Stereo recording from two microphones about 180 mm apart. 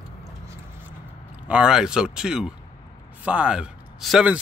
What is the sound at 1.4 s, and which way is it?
Speech, 5° right (ahead or behind).